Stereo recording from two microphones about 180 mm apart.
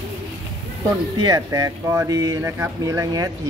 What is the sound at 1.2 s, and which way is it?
Speech, 20° right (ahead or behind).